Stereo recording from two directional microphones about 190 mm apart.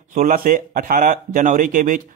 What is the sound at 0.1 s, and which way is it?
Speech, 45° right (ahead or behind).